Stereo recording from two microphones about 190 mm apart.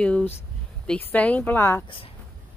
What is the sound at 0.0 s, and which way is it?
Speech, 5° left (ahead or behind).